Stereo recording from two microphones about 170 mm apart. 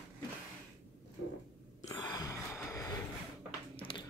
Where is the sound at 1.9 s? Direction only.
20° left (ahead or behind).